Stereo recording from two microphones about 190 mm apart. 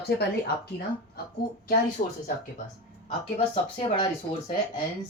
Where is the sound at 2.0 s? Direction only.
40° left (ahead or behind).